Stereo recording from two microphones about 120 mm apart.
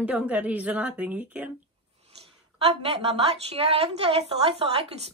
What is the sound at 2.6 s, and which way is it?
A woman's voice, 55° right (ahead or behind).